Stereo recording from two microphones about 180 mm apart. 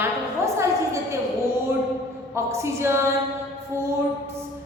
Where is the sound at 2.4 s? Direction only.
15° right (ahead or behind).